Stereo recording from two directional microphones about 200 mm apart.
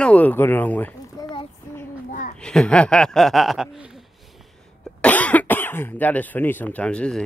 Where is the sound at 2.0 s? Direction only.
40° left (ahead or behind).